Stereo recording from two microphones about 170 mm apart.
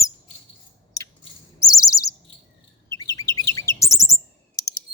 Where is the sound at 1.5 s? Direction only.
20° left (ahead or behind).